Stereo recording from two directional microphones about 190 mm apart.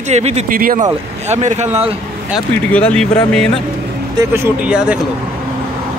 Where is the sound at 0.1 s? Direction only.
35° right (ahead or behind).